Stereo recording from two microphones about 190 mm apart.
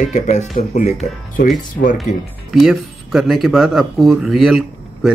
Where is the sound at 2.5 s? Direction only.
Centre (ahead or behind).